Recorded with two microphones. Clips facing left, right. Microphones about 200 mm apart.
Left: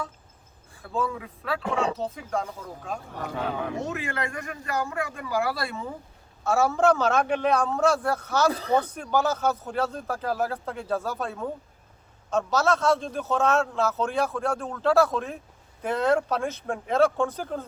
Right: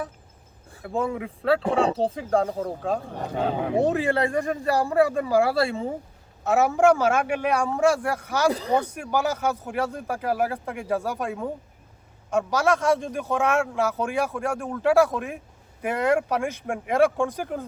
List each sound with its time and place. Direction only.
0.9 s a man's voice: 25° right (ahead or behind)